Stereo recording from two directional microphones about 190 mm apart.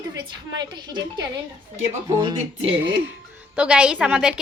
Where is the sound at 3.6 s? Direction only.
5° right (ahead or behind).